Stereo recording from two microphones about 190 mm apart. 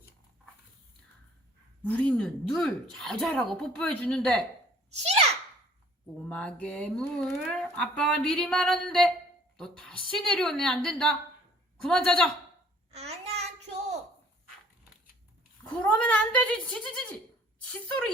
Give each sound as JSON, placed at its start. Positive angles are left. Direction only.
{"t": 1.9, "sound": "speech", "side_deg": 5}
{"t": 4.9, "sound": "a sound", "side_deg": -35}
{"t": 6.2, "sound": "speech", "side_deg": 5}
{"t": 12.9, "sound": "child singing", "side_deg": -35}
{"t": 15.6, "sound": "speech", "side_deg": 5}